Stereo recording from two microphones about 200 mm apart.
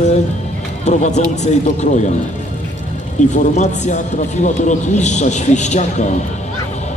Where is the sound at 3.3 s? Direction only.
35° left (ahead or behind).